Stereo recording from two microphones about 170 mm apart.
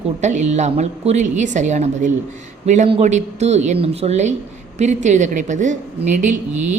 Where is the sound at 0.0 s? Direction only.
45° right (ahead or behind).